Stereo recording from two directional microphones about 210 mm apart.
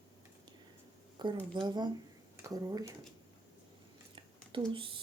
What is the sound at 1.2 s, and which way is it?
Speech, 20° right (ahead or behind).